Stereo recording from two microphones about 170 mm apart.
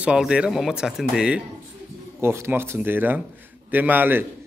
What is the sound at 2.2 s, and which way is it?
Speech, 15° right (ahead or behind).